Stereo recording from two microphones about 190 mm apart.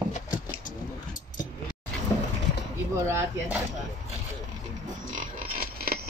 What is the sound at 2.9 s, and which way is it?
Speech, 15° right (ahead or behind).